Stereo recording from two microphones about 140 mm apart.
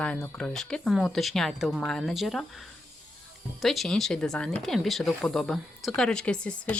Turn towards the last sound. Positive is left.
turn(degrees=5)  # may be behind; listen again after turning